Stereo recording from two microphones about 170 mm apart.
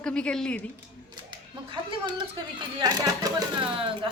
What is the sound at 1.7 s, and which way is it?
A woman's voice, 25° right (ahead or behind).